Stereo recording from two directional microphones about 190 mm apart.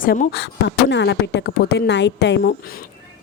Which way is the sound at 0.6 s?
65° left (ahead or behind).